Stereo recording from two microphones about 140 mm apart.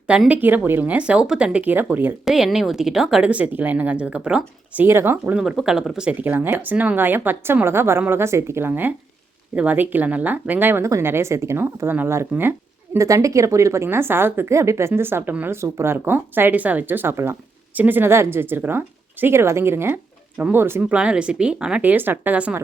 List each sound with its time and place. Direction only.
0.1 s speech: 10° right (ahead or behind)
2.2 s speech: centre (ahead or behind)